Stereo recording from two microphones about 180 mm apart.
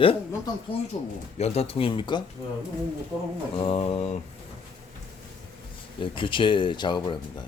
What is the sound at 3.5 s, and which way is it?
Speech, 30° left (ahead or behind).